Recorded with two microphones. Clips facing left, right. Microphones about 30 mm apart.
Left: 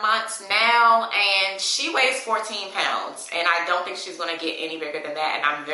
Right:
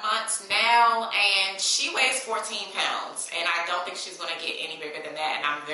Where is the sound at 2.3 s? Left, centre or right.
Left.